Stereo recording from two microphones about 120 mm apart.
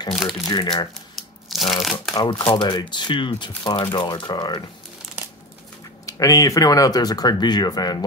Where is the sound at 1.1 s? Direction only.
Centre (ahead or behind).